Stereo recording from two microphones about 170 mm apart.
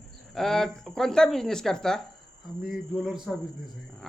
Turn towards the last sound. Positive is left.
turn(degrees=-5)  # may be behind; listen again after turning